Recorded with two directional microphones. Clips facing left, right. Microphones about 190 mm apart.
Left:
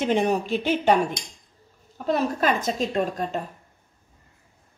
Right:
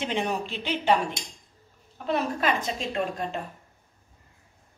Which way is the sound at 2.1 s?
40° left (ahead or behind).